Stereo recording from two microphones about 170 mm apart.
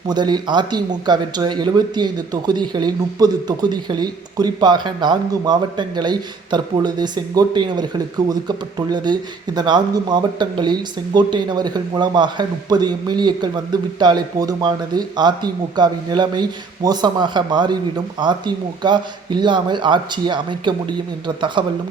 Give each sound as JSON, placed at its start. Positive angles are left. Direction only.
{"t": 0.1, "sound": "speech", "side_deg": -25}